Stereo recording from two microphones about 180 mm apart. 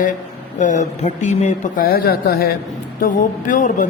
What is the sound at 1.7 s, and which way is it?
Speech, 55° left (ahead or behind).